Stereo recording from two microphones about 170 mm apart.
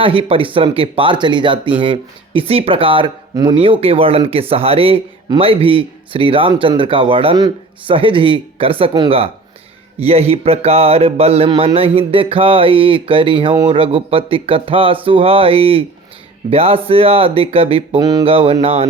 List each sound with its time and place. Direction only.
0.0 s speech: 30° right (ahead or behind)
18.0 s a sound: 25° right (ahead or behind)
18.6 s speech: 35° right (ahead or behind)